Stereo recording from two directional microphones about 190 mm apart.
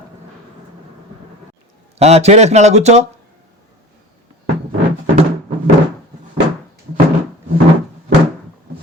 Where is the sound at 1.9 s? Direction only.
35° right (ahead or behind).